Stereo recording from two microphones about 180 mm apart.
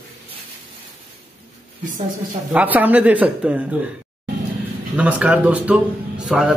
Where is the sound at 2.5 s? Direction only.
10° right (ahead or behind).